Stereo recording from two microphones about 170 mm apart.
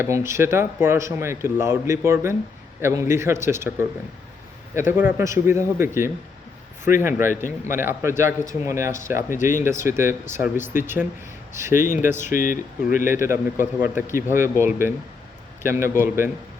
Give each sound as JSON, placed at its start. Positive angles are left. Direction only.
{"t": 0.0, "sound": "a man's voice", "side_deg": -15}
{"t": 4.9, "sound": "a man's voice", "side_deg": -10}
{"t": 12.2, "sound": "speech", "side_deg": 50}
{"t": 13.1, "sound": "a man's voice", "side_deg": -15}